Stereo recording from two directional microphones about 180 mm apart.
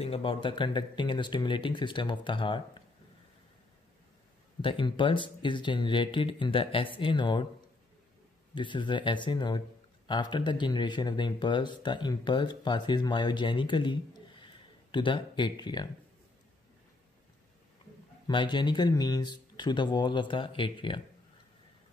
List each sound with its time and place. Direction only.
0.0 s speech: 30° left (ahead or behind)
4.6 s speech: 30° left (ahead or behind)
8.5 s speech: 25° left (ahead or behind)
18.2 s speech: 25° left (ahead or behind)